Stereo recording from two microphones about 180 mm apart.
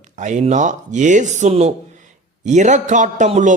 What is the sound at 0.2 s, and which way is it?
A man's voice, 40° right (ahead or behind).